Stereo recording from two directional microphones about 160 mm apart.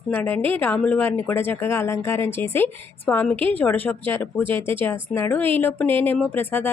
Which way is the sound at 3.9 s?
10° left (ahead or behind).